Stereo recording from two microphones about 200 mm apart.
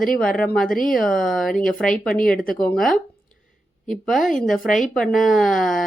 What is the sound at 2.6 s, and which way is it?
Speech, 5° left (ahead or behind).